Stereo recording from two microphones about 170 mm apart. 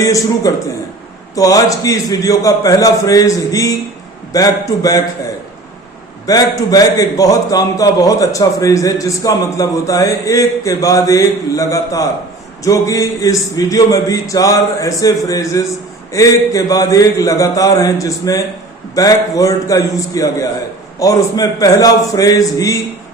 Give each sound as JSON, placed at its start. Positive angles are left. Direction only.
{"t": 0.0, "sound": "a man's voice", "side_deg": 20}
{"t": 6.2, "sound": "a man's voice", "side_deg": 20}